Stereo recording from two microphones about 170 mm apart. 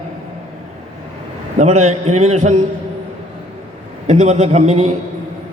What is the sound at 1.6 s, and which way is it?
A man's voice, 40° right (ahead or behind).